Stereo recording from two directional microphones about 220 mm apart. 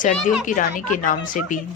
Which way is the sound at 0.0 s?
35° left (ahead or behind).